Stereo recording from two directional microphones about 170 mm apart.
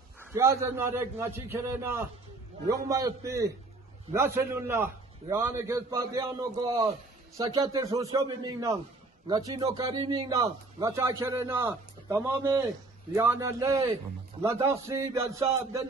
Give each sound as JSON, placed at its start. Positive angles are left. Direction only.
{"t": 0.2, "sound": "a man's voice", "side_deg": -15}